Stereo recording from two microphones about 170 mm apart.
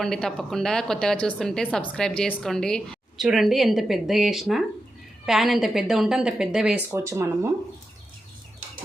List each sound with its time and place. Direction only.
0.0 s a woman's voice: 5° left (ahead or behind)
6.9 s speech: 15° right (ahead or behind)